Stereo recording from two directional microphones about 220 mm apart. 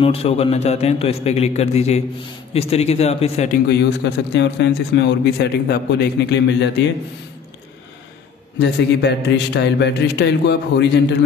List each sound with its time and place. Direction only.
0.0 s a man's voice: 25° left (ahead or behind)
4.0 s a man's voice: 50° left (ahead or behind)
8.5 s a man's voice: 50° left (ahead or behind)